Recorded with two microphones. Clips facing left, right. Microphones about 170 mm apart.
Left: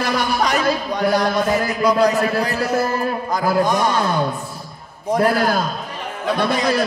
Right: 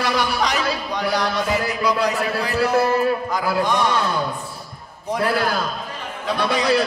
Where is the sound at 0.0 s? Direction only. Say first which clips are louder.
Left 2 dB; 50° left (ahead or behind).